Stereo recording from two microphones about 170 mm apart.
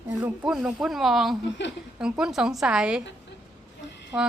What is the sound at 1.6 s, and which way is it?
Speech, 90° left.